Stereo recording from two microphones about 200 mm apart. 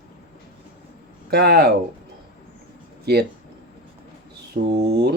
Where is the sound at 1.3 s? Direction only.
55° right (ahead or behind).